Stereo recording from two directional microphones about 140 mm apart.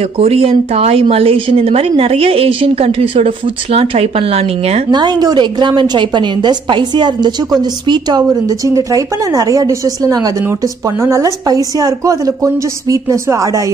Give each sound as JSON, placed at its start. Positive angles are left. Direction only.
{"t": 0.2, "sound": "speech", "side_deg": -45}
{"t": 4.9, "sound": "a woman's voice", "side_deg": -30}